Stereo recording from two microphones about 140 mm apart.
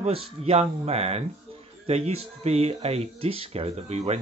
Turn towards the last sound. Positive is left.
turn(degrees=-50)  # may be behind; listen again after turning